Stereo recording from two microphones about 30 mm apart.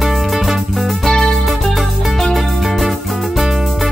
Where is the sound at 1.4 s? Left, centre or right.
Centre.